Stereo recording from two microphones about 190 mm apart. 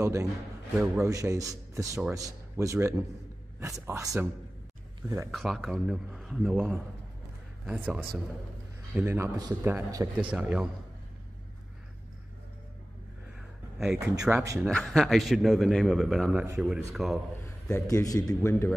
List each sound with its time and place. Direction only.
0.0 s a man's voice: 15° right (ahead or behind)
5.3 s a man's voice: centre (ahead or behind)
10.1 s a man's voice: 5° right (ahead or behind)
13.4 s a sound: centre (ahead or behind)
13.9 s a man's voice: 15° right (ahead or behind)
14.6 s a man's voice: centre (ahead or behind)
17.6 s a man's voice: 15° left (ahead or behind)